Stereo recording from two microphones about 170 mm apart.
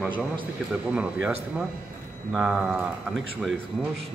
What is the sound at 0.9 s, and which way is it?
Speech, 5° right (ahead or behind).